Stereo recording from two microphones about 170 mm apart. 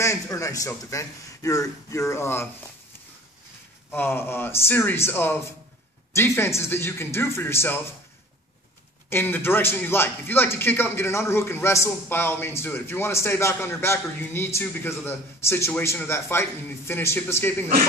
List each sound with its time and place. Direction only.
0.0 s a man's voice: 20° left (ahead or behind)
3.9 s a man's voice: 10° left (ahead or behind)
9.1 s a man's voice: 10° left (ahead or behind)